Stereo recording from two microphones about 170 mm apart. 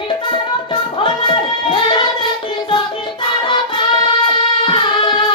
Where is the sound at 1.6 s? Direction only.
30° left (ahead or behind).